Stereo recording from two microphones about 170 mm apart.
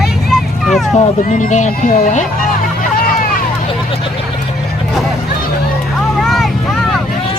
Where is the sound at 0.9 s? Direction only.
45° left (ahead or behind).